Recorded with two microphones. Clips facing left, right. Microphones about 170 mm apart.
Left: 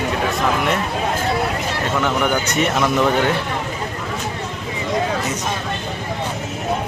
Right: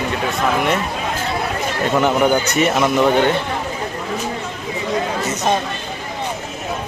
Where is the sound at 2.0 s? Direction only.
25° right (ahead or behind).